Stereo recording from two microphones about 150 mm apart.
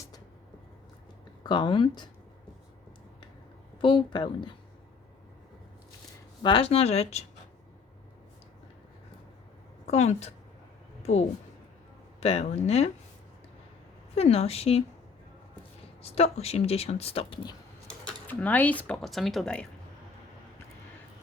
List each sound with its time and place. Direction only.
1.5 s speech: 30° left (ahead or behind)
3.8 s speech: 35° left (ahead or behind)
6.4 s speech: 35° left (ahead or behind)
9.8 s a woman's voice: 45° left (ahead or behind)
14.2 s speech: 40° left (ahead or behind)
16.0 s speech: 45° left (ahead or behind)
17.8 s speech: 5° left (ahead or behind)